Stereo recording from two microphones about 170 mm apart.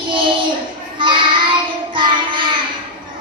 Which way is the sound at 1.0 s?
30° right (ahead or behind).